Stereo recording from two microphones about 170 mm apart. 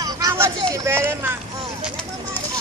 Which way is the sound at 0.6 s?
20° right (ahead or behind).